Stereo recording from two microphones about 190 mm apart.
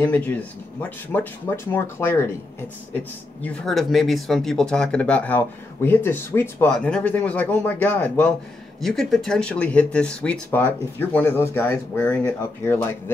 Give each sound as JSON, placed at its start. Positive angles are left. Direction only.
{"t": 0.0, "sound": "speech", "side_deg": 10}